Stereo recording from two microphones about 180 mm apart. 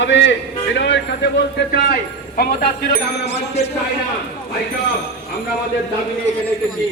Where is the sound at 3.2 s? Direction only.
35° left (ahead or behind).